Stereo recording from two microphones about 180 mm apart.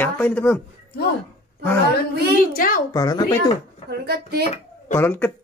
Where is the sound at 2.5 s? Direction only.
50° left (ahead or behind).